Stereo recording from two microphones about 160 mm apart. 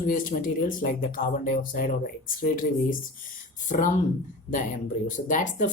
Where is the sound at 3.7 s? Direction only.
50° left (ahead or behind).